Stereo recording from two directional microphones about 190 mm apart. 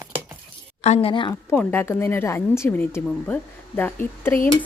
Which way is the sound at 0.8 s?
30° left (ahead or behind).